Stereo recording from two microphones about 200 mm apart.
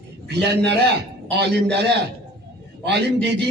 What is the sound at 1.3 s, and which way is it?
A man's voice, 60° right (ahead or behind).